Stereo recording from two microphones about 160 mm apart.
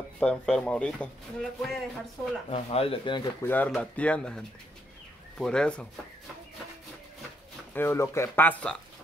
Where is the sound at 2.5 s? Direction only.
40° left (ahead or behind).